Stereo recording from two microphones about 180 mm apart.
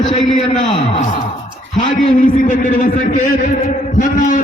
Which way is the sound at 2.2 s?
50° left (ahead or behind).